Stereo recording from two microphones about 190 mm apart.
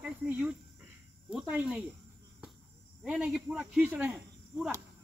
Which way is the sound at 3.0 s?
5° right (ahead or behind).